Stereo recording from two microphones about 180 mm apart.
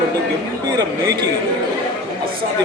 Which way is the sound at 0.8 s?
20° right (ahead or behind).